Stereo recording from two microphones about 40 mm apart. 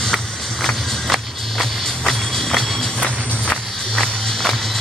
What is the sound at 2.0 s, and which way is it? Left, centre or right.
Music, centre.